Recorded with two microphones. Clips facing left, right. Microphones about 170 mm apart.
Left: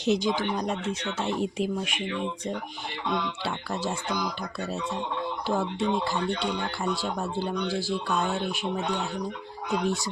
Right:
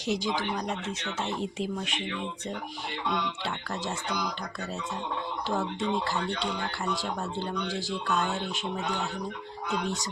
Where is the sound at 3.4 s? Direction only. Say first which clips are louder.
Left 3 dB; 10° left (ahead or behind).